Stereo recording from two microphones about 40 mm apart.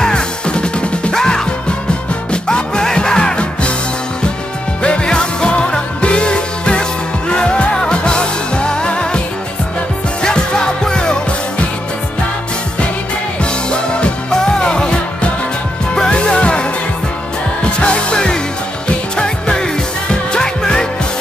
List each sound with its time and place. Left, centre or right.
0.0 s music: left
4.8 s music: left
10.2 s music: centre
13.4 s music: left
16.1 s music: left
17.7 s music: left